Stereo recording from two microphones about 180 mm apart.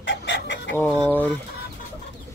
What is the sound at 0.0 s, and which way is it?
Chicken, 90° left.